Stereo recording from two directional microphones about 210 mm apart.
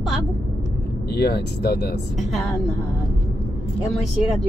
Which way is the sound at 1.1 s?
50° left (ahead or behind).